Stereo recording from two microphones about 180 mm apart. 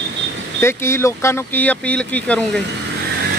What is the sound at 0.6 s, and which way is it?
Speech, 15° left (ahead or behind).